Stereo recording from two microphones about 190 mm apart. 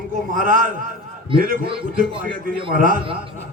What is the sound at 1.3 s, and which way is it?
Speech, 25° right (ahead or behind).